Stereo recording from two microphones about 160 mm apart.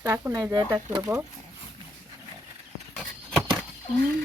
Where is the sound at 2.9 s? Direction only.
Centre (ahead or behind).